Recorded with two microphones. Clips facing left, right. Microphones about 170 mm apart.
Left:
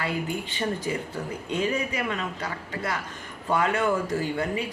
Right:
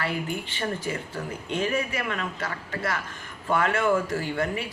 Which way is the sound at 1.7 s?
20° left (ahead or behind).